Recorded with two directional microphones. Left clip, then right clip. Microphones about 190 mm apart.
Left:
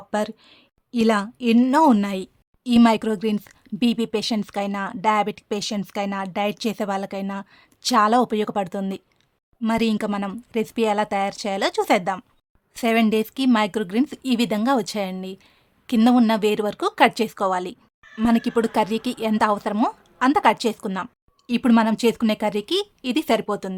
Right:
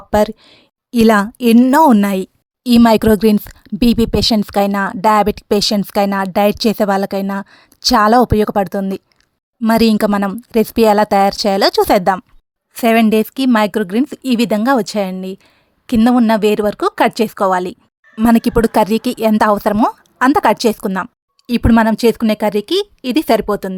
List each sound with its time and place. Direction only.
0.1 s a woman's voice: 40° right (ahead or behind)
9.6 s a woman's voice: 45° right (ahead or behind)